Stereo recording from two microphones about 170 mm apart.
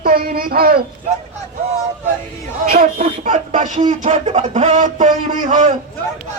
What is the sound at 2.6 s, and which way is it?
Speech, 50° right (ahead or behind).